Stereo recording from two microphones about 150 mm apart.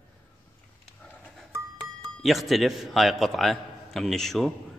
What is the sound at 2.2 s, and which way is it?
A man's voice, centre (ahead or behind).